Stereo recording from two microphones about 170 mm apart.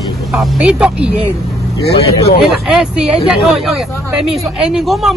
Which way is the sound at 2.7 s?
5° right (ahead or behind).